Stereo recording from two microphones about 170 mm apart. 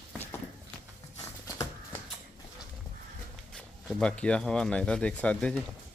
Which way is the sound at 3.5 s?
5° left (ahead or behind).